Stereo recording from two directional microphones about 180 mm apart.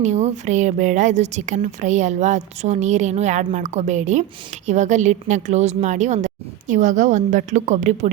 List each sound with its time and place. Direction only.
0.0 s a woman's voice: 40° right (ahead or behind)